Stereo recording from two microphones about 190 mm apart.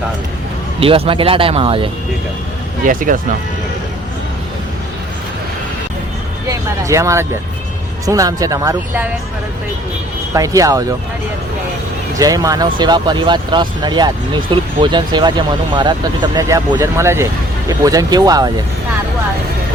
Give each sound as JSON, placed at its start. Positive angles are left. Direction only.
{"t": 0.8, "sound": "speech", "side_deg": -30}
{"t": 2.8, "sound": "speech", "side_deg": -45}
{"t": 6.5, "sound": "speech", "side_deg": -15}
{"t": 10.3, "sound": "speech", "side_deg": -15}
{"t": 12.1, "sound": "speech", "side_deg": -20}